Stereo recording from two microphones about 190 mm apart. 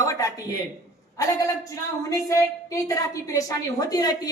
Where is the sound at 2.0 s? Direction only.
15° left (ahead or behind).